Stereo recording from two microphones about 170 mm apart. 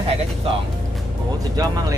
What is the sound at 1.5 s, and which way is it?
Speech, 20° right (ahead or behind).